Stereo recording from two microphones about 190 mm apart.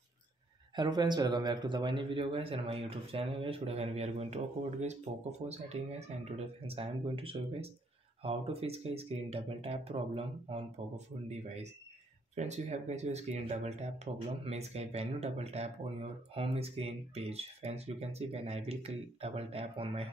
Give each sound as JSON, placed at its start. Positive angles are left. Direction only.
{"t": 0.7, "sound": "speech", "side_deg": -20}